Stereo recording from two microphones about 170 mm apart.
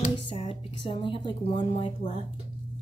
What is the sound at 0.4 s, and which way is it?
Speech, 30° left (ahead or behind).